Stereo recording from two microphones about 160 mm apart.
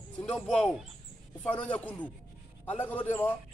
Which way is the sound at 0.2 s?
5° left (ahead or behind).